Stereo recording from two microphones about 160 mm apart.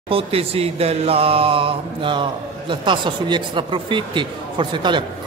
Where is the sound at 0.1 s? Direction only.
35° right (ahead or behind).